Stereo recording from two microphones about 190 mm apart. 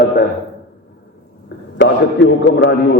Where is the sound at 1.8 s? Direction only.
70° left (ahead or behind).